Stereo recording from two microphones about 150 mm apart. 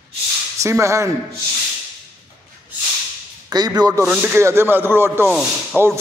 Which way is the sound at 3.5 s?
25° right (ahead or behind).